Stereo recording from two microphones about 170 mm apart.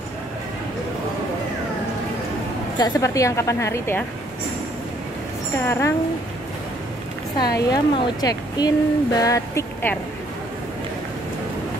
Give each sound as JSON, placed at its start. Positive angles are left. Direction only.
{"t": 2.8, "sound": "a woman's voice", "side_deg": 20}
{"t": 5.7, "sound": "a woman's voice", "side_deg": 15}
{"t": 7.3, "sound": "speech", "side_deg": 20}